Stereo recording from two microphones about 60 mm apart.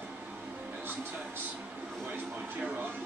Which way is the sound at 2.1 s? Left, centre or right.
Right.